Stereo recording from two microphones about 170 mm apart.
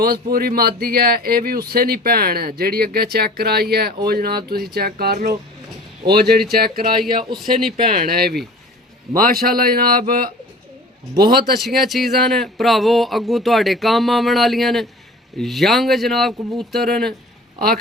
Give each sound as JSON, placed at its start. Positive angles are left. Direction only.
{"t": 0.0, "sound": "speech", "side_deg": -60}
{"t": 9.1, "sound": "speech", "side_deg": 0}
{"t": 9.4, "sound": "speech", "side_deg": -60}
{"t": 11.6, "sound": "speech", "side_deg": 0}